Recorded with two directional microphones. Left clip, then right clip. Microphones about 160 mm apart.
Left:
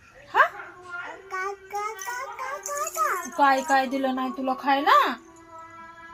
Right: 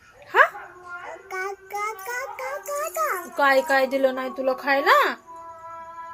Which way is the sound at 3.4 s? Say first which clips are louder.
Right 2 dB; 20° right (ahead or behind).